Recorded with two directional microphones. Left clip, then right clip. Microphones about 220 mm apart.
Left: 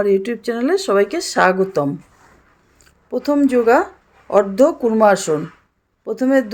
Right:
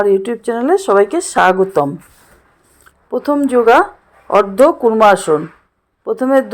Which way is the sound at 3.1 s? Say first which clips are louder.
Right 2 dB; centre (ahead or behind).